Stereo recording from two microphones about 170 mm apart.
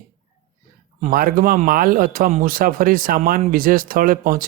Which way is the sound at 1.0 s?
55° right (ahead or behind).